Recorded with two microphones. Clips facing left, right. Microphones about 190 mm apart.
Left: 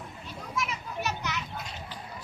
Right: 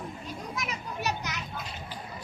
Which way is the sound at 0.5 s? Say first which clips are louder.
Left 5 dB; 40° right (ahead or behind).